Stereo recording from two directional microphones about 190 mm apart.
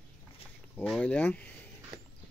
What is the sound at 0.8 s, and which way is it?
Speech, 5° left (ahead or behind).